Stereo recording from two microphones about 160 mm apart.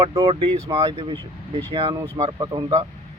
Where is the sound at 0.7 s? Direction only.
20° right (ahead or behind).